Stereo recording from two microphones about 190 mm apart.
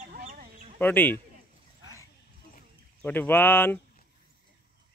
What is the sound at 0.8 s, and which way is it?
Speech, 10° left (ahead or behind).